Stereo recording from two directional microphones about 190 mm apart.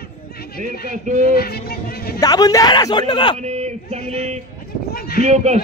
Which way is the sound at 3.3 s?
35° right (ahead or behind).